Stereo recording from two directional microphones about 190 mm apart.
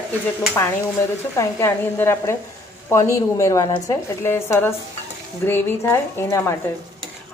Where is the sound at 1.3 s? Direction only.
15° left (ahead or behind).